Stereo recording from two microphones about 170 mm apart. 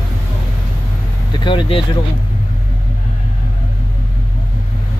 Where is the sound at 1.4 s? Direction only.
30° left (ahead or behind).